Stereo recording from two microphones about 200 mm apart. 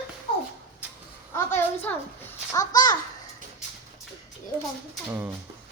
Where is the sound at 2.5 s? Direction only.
20° left (ahead or behind).